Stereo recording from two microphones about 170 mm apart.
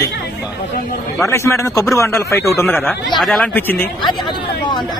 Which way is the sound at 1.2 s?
15° left (ahead or behind).